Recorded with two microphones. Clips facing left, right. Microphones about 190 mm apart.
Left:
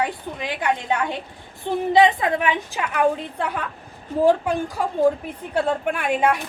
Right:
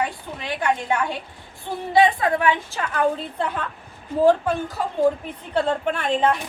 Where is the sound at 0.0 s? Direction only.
20° left (ahead or behind).